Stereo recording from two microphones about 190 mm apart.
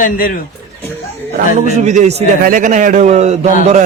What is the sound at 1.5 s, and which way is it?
A man's voice, 40° right (ahead or behind).